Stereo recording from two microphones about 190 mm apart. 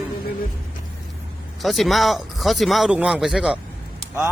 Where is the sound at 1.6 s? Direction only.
Centre (ahead or behind).